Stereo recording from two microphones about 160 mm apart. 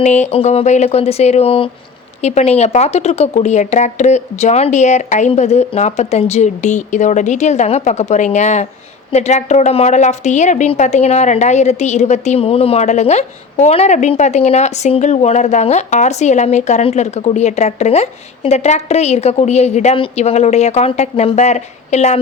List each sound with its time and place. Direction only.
0.0 s a woman's voice: 45° left (ahead or behind)